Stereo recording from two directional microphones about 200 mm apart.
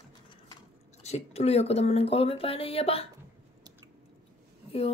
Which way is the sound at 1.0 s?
30° left (ahead or behind).